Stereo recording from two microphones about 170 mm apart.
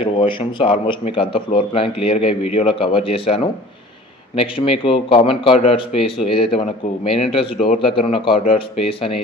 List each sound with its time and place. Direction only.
0.0 s speech: 30° left (ahead or behind)